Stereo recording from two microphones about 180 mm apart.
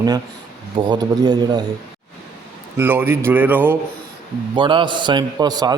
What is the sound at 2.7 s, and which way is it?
Speech, 10° right (ahead or behind).